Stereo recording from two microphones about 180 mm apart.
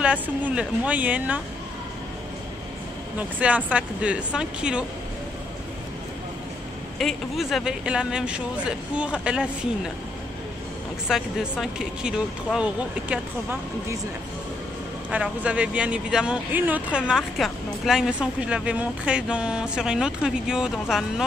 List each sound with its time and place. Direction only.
0.0 s speech: 5° right (ahead or behind)
3.2 s speech: 10° right (ahead or behind)
7.0 s speech: centre (ahead or behind)
11.1 s speech: centre (ahead or behind)
15.0 s speech: 5° right (ahead or behind)